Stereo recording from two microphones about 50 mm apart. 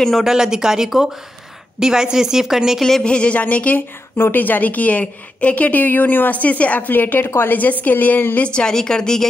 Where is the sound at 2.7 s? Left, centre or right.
Centre.